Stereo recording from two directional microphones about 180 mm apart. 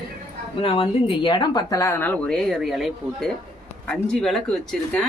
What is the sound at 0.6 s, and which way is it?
Speech, 30° left (ahead or behind).